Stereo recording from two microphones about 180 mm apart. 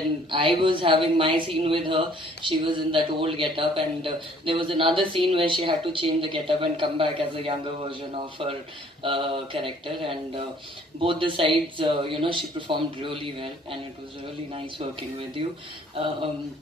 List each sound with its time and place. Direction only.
0.3 s a man's voice: 30° right (ahead or behind)
15.4 s speech: 30° right (ahead or behind)